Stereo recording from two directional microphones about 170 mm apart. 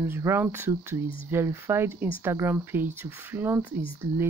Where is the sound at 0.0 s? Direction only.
15° right (ahead or behind).